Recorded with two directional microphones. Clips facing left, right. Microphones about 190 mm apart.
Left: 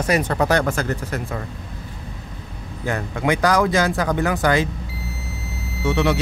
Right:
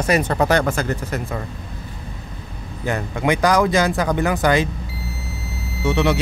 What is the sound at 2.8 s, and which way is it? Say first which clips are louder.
Speech: right 1 dB; 15° right (ahead or behind).